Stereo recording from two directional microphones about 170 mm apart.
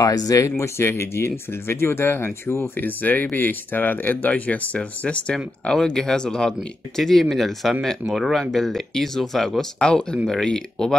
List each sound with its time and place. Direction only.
0.0 s speech: 20° left (ahead or behind); by 11.0 s 5° left (ahead or behind)